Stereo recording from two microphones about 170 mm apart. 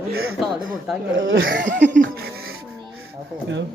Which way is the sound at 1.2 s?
90° right.